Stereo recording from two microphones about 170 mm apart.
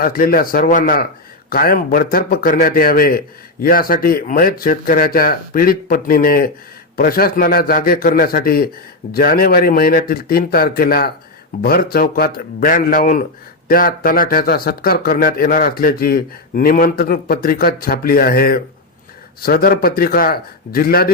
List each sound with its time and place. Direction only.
0.0 s a man's voice: 60° left (ahead or behind)